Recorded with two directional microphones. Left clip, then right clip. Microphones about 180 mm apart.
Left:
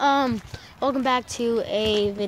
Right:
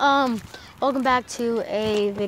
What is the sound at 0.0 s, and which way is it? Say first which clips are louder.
Speech: right 1 dB; centre (ahead or behind).